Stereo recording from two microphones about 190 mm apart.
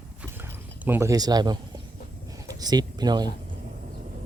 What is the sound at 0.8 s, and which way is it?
Speech, 15° right (ahead or behind).